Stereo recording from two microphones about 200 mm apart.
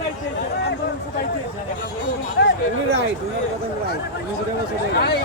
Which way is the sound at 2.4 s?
55° left (ahead or behind).